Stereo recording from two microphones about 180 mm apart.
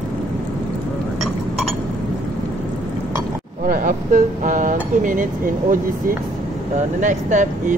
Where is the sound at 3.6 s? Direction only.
50° right (ahead or behind).